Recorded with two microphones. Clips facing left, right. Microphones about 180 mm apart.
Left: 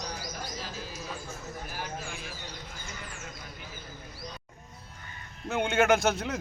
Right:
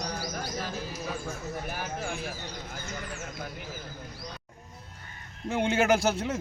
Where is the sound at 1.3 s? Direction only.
60° right (ahead or behind).